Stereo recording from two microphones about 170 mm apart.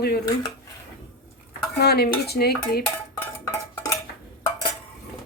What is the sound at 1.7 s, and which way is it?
A woman's voice, 65° left (ahead or behind).